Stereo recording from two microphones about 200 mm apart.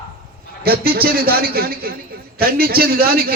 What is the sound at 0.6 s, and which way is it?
A man's voice, 50° right (ahead or behind).